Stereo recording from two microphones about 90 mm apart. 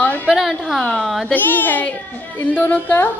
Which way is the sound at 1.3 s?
20° left (ahead or behind).